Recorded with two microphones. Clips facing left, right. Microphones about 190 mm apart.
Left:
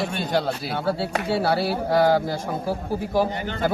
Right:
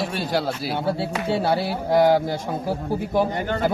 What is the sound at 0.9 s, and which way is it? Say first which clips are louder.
A man's voice: left 1 dB; 25° right (ahead or behind).